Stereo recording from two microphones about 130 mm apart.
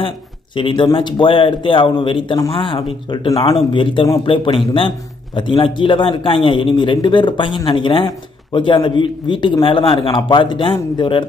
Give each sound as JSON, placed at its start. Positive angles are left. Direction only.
{"t": 0.6, "sound": "a man's voice", "side_deg": 40}